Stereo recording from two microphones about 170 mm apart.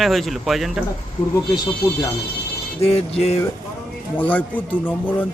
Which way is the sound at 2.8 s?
35° left (ahead or behind).